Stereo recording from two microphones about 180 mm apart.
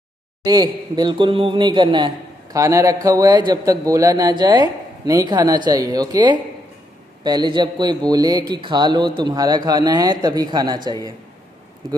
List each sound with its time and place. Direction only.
0.4 s a man's voice: 20° right (ahead or behind)